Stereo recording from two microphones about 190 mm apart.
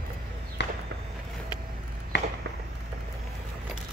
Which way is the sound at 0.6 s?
65° left (ahead or behind).